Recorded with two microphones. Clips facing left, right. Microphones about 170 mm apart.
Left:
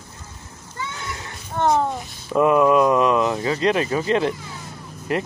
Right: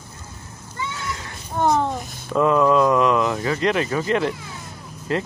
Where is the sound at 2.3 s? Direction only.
15° left (ahead or behind).